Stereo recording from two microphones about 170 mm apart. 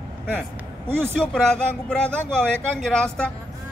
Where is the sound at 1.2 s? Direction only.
5° left (ahead or behind).